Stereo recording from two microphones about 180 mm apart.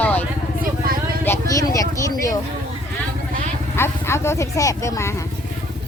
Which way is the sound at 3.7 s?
15° left (ahead or behind).